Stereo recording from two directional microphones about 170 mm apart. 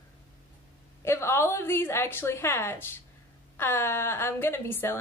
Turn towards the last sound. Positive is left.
turn(degrees=15)  # may be behind; listen again after turning